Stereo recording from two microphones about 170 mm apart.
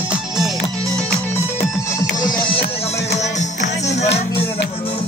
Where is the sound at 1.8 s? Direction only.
20° left (ahead or behind).